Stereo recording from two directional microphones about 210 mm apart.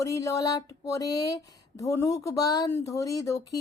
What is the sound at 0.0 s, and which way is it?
Speech, 15° left (ahead or behind).